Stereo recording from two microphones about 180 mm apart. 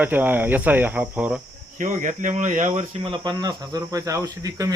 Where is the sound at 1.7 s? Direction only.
45° right (ahead or behind).